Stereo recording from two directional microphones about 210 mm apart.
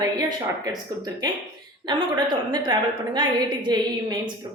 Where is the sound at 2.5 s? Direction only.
20° right (ahead or behind).